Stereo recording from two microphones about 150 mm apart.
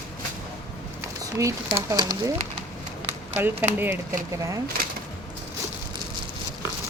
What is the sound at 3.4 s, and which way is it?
Speech, 15° right (ahead or behind).